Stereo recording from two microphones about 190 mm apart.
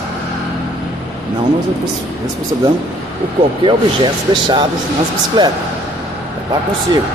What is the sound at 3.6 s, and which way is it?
Speech, 25° right (ahead or behind).